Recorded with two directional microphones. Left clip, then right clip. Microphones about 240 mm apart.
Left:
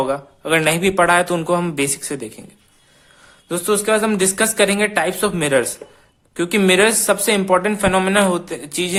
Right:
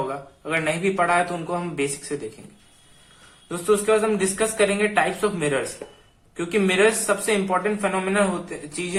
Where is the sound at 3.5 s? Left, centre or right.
Left.